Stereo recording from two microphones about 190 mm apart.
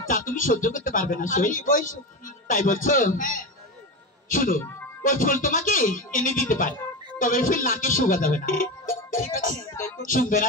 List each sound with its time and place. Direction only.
0.1 s a man's voice: 45° left (ahead or behind)